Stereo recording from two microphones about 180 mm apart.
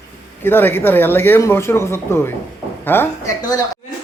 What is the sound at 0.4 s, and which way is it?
Speech, 10° left (ahead or behind).